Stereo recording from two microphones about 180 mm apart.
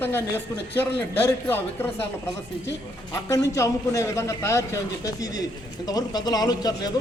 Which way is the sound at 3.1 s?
15° left (ahead or behind).